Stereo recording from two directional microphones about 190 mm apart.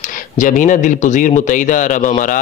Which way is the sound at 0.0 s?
45° left (ahead or behind).